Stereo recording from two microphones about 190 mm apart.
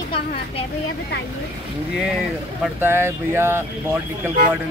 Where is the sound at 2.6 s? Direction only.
10° right (ahead or behind).